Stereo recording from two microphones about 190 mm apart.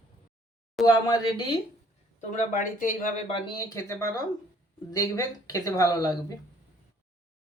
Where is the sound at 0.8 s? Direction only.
20° left (ahead or behind).